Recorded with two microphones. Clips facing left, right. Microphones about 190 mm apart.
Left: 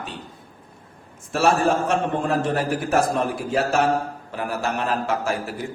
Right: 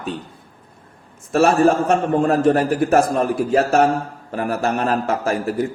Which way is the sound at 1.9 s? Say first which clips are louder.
Right 5 dB; 50° right (ahead or behind).